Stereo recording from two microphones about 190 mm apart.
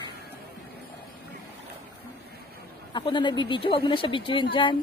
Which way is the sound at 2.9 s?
25° left (ahead or behind).